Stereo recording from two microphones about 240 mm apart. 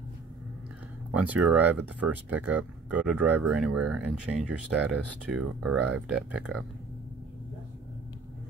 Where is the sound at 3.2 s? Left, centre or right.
Right.